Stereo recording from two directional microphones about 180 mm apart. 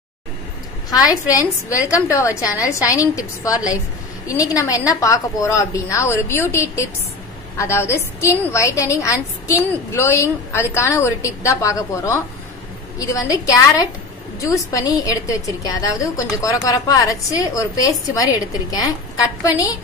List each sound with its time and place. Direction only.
0.8 s a woman's voice: 20° left (ahead or behind)